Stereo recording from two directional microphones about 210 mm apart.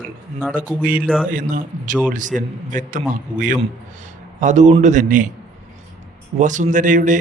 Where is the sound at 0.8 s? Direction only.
40° right (ahead or behind).